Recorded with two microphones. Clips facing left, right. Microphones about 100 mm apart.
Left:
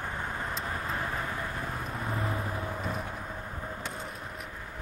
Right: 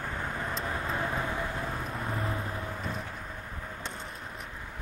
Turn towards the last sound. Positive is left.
turn(degrees=0)  # may be behind; listen again after turning